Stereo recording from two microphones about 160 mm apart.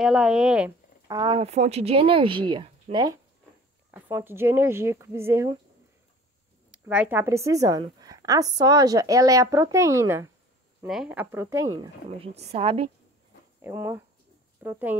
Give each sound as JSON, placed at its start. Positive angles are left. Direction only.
{"t": 0.0, "sound": "speech", "side_deg": -5}
{"t": 1.0, "sound": "speech", "side_deg": -25}
{"t": 1.4, "sound": "speech", "side_deg": -40}
{"t": 3.9, "sound": "speech", "side_deg": -15}
{"t": 6.7, "sound": "a woman's voice", "side_deg": -10}
{"t": 10.9, "sound": "speech", "side_deg": -5}
{"t": 12.2, "sound": "speech", "side_deg": -40}
{"t": 13.6, "sound": "speech", "side_deg": -15}